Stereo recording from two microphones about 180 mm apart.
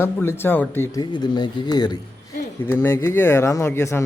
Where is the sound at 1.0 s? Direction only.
25° left (ahead or behind).